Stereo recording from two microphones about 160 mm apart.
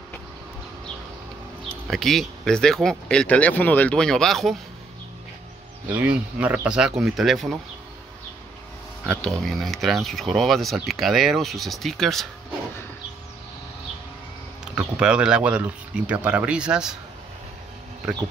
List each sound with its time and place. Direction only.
1.9 s speech: centre (ahead or behind)
5.9 s speech: 10° right (ahead or behind)
9.2 s speech: centre (ahead or behind)
14.6 s speech: 5° right (ahead or behind)